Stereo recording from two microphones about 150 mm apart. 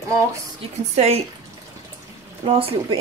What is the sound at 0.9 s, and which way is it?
Speech, 45° right (ahead or behind).